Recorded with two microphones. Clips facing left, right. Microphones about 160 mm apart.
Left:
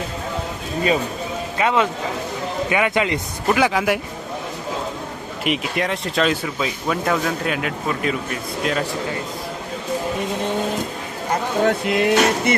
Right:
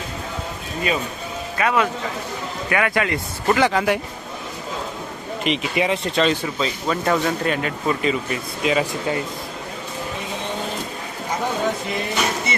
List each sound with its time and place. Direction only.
1.5 s speech: 20° left (ahead or behind)
3.5 s speech: 5° left (ahead or behind)
5.4 s speech: centre (ahead or behind)
11.6 s speech: 90° left